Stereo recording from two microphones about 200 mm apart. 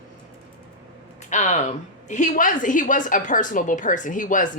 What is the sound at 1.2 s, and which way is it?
A woman's voice, 35° left (ahead or behind).